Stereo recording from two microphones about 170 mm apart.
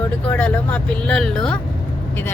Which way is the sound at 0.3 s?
10° left (ahead or behind).